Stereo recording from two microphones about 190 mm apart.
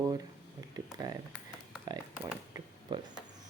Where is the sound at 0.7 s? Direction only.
20° right (ahead or behind).